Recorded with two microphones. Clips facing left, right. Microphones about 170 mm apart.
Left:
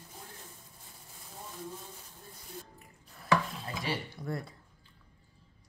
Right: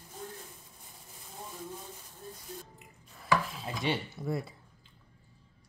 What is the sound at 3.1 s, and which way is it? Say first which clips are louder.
Stir: left 1 dB; centre (ahead or behind).